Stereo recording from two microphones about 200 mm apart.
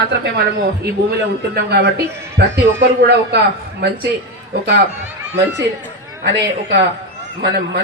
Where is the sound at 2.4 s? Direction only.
55° right (ahead or behind).